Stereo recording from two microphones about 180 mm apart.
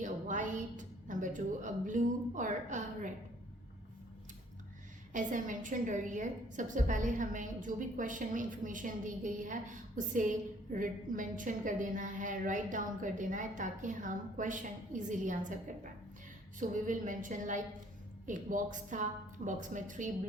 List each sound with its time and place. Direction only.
0.0 s a woman's voice: 45° right (ahead or behind)
5.1 s a woman's voice: 45° right (ahead or behind)